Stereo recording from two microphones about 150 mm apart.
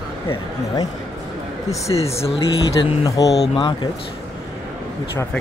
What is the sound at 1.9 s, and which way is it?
Speech, 30° left (ahead or behind).